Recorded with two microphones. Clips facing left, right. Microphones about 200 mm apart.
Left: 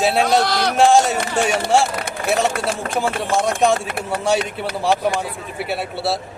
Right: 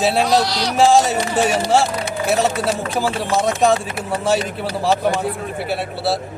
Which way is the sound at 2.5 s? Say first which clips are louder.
Right 2 dB; 50° left (ahead or behind).